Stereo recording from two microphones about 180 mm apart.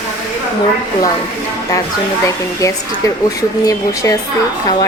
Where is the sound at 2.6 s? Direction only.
20° left (ahead or behind).